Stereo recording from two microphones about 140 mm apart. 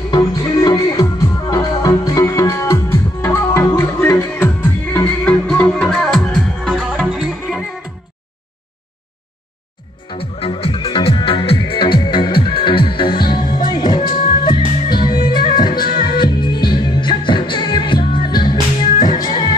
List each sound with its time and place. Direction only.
0.1 s music: 25° left (ahead or behind); by 7.6 s centre (ahead or behind)
10.0 s music: 40° left (ahead or behind)
13.2 s music: 85° left
13.7 s music: 30° left (ahead or behind)